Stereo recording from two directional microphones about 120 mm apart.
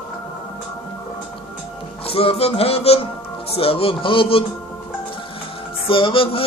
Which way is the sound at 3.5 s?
50° left (ahead or behind).